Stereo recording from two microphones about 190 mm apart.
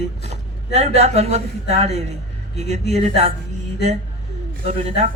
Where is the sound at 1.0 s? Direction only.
35° right (ahead or behind).